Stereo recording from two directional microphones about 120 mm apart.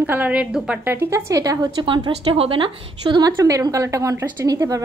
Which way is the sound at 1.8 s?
40° right (ahead or behind).